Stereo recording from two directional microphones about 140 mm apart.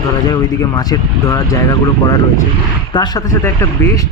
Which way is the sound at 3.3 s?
20° left (ahead or behind).